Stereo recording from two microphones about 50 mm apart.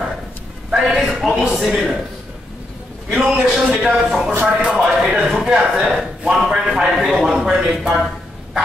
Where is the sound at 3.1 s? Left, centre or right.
Centre.